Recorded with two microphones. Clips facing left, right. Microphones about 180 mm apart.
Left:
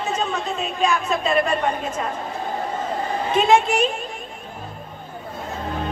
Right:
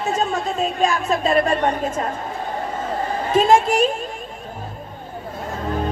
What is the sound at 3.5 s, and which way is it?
Speech, 45° right (ahead or behind).